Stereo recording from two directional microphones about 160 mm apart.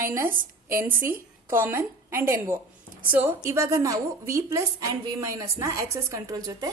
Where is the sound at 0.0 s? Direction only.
15° right (ahead or behind).